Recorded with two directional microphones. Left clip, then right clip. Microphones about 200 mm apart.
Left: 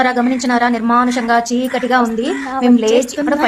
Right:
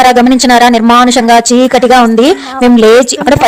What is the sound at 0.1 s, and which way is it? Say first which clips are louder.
Speech: right 11 dB; 40° right (ahead or behind).